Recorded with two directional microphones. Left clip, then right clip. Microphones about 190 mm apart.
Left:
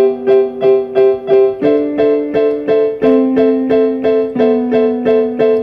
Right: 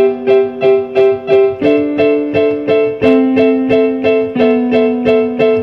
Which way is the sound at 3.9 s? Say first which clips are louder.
Right 1 dB; 35° right (ahead or behind).